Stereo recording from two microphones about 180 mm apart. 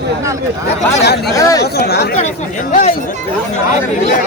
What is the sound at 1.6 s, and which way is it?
Speech, 60° left (ahead or behind).